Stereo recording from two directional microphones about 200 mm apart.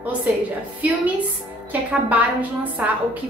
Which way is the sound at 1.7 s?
5° right (ahead or behind).